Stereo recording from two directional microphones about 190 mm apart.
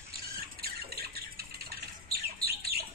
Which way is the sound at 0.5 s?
55° right (ahead or behind).